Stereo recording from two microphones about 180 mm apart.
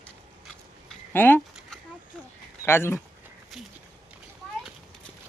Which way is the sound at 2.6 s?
15° left (ahead or behind).